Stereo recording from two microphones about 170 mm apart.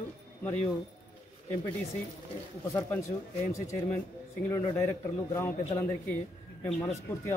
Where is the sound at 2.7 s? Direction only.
15° left (ahead or behind).